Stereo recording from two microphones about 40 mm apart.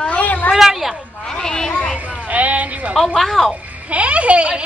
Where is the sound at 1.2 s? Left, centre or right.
Centre.